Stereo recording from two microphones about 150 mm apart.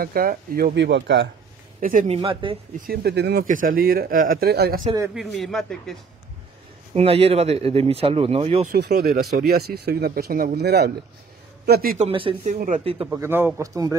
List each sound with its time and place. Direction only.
0.0 s speech: 75° right (ahead or behind)
1.8 s speech: 65° right (ahead or behind)
2.0 s speech: 40° right (ahead or behind)
2.9 s speech: 90° right
5.1 s a man's voice: centre (ahead or behind)
6.9 s speech: 40° right (ahead or behind)
8.7 s a man's voice: 90° right
12.0 s speech: 35° right (ahead or behind)
12.4 s speech: 55° right (ahead or behind)
12.8 s speech: 40° right (ahead or behind)
13.1 s a man's voice: 15° right (ahead or behind)